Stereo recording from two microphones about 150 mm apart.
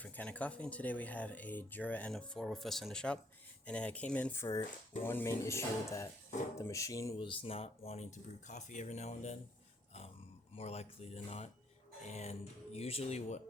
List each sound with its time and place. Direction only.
0.0 s speech: 10° left (ahead or behind)
7.2 s speech: 35° left (ahead or behind)
10.5 s speech: 45° left (ahead or behind)